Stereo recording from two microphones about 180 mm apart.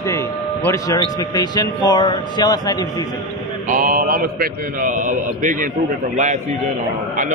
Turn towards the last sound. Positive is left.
turn(degrees=-40)  # may be behind; listen again after turning